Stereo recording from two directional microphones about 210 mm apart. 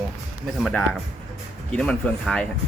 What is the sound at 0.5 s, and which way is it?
Speech, 5° left (ahead or behind).